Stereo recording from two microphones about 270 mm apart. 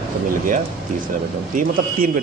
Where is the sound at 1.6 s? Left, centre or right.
Right.